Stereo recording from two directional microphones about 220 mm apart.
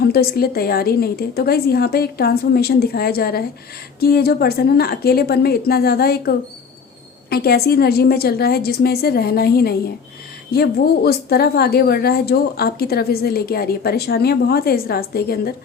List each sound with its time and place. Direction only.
0.0 s speech: 45° left (ahead or behind)